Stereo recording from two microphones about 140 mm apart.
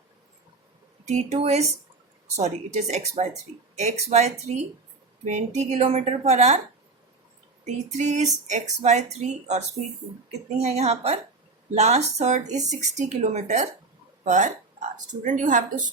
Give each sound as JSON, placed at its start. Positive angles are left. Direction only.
{"t": 1.0, "sound": "a woman's voice", "side_deg": -55}
{"t": 7.6, "sound": "a woman's voice", "side_deg": -55}